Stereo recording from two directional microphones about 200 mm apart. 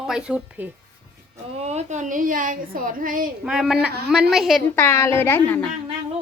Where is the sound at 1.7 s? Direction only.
35° right (ahead or behind).